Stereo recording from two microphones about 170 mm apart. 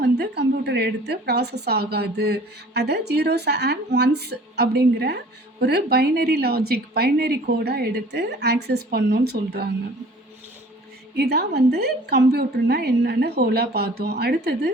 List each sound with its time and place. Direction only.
0.0 s a woman's voice: 75° right (ahead or behind)
11.1 s a woman's voice: 75° right (ahead or behind)